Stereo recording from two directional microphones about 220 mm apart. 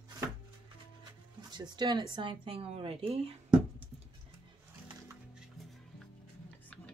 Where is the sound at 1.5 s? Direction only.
20° right (ahead or behind).